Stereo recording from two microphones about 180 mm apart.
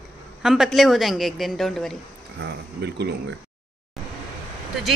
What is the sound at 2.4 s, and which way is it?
Speech, 65° right (ahead or behind).